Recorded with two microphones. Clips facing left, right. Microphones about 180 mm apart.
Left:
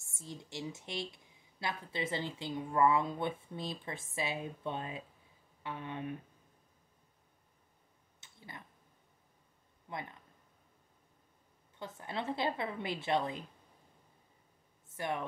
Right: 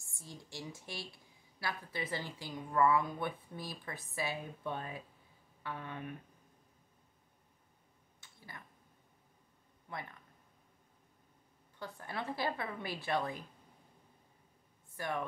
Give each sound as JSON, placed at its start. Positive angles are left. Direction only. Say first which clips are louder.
{"t": 0.0, "sound": "a woman's voice", "louder": "left 4 dB", "side_deg": 20}
{"t": 8.2, "sound": "a sound", "louder": "left 2 dB", "side_deg": 20}
{"t": 9.9, "sound": "a woman's voice", "louder": "left 2 dB", "side_deg": 20}
{"t": 11.8, "sound": "a woman's voice", "louder": "left 2 dB", "side_deg": 20}
{"t": 15.0, "sound": "a woman's voice", "louder": "left 1 dB", "side_deg": 20}